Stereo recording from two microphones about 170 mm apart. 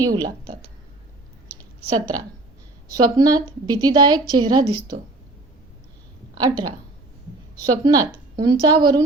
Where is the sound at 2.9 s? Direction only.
20° right (ahead or behind).